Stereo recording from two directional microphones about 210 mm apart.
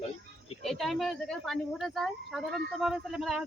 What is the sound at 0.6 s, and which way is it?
Speech, centre (ahead or behind).